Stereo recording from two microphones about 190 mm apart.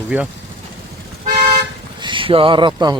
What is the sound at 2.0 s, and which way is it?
Speech, 25° right (ahead or behind).